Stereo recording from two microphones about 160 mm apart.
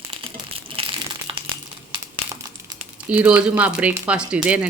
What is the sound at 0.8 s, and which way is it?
Crushing, 35° right (ahead or behind).